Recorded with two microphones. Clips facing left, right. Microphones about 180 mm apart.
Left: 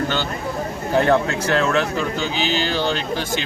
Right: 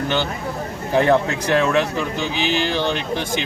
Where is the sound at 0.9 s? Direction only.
15° right (ahead or behind).